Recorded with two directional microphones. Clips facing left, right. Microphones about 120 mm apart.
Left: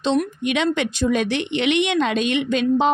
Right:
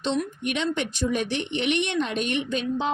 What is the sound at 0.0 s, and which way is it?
Speech, 90° left.